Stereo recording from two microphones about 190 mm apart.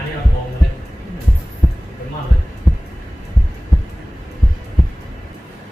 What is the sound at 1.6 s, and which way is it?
Heart sounds, centre (ahead or behind).